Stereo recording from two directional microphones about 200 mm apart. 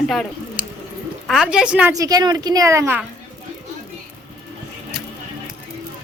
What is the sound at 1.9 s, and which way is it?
A woman's voice, 20° right (ahead or behind).